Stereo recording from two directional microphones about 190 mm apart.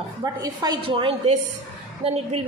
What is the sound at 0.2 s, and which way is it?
A woman's voice, 20° right (ahead or behind).